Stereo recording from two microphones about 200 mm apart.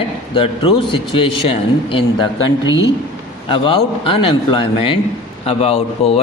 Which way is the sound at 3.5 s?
25° left (ahead or behind).